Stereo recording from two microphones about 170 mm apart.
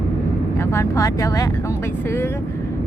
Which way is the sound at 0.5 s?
15° left (ahead or behind).